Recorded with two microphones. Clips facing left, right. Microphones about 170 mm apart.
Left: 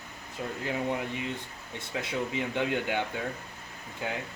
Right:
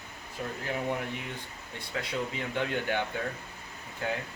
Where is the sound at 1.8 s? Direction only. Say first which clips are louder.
Left 1 dB; 20° left (ahead or behind).